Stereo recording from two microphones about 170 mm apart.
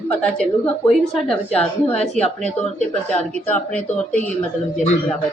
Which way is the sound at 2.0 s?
40° left (ahead or behind).